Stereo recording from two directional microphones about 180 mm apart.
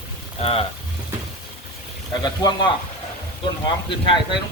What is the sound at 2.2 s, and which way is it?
Frying, 25° left (ahead or behind).